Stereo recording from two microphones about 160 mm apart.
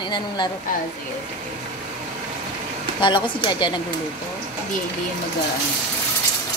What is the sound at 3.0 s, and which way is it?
Speech, 30° left (ahead or behind).